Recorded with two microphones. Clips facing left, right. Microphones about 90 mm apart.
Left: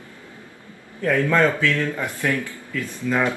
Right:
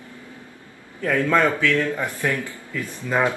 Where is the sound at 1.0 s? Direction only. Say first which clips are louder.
Left 1 dB; 20° right (ahead or behind).